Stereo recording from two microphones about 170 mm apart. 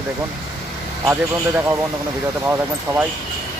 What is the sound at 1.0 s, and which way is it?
Speech, 15° right (ahead or behind).